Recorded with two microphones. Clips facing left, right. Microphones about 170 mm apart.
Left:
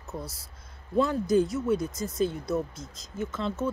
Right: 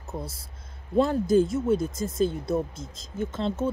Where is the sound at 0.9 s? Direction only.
30° right (ahead or behind).